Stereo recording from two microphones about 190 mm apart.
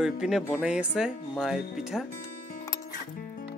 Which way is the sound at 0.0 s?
5° right (ahead or behind).